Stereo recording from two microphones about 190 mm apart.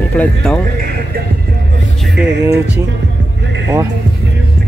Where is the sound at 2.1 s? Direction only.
60° right (ahead or behind).